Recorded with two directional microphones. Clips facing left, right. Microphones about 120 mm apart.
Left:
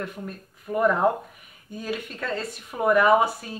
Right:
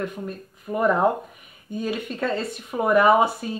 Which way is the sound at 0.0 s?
15° right (ahead or behind).